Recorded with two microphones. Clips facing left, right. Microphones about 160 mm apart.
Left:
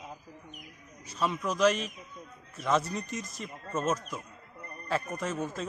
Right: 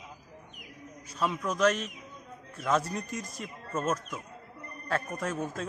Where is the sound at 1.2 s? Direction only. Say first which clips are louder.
Left 1 dB; centre (ahead or behind).